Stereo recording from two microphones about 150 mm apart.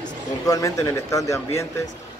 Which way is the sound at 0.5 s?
25° left (ahead or behind).